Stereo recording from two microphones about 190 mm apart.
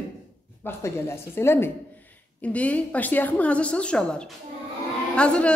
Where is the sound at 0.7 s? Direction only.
15° left (ahead or behind).